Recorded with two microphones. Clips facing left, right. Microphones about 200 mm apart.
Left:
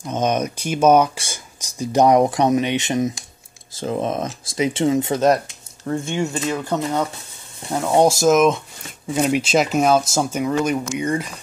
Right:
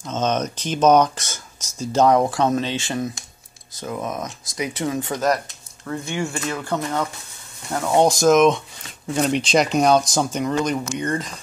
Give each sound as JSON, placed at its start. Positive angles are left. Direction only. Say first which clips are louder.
{"t": 0.0, "sound": "speech", "louder": "left 2 dB", "side_deg": 15}
{"t": 8.0, "sound": "speech", "louder": "even", "side_deg": 5}